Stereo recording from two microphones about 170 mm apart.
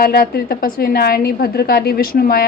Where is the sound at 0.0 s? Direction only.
65° left (ahead or behind).